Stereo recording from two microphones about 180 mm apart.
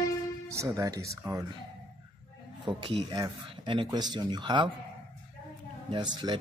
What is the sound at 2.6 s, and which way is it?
Speech, 25° right (ahead or behind).